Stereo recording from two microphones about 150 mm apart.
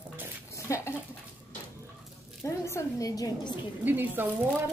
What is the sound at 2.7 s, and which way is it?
Speech, 20° left (ahead or behind).